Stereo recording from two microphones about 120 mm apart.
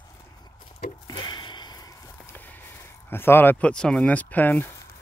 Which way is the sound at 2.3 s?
15° left (ahead or behind).